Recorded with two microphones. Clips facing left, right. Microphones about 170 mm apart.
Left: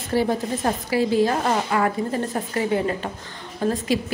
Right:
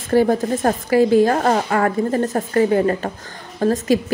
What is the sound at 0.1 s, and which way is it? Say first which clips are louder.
A woman's voice: right 6 dB; 50° right (ahead or behind).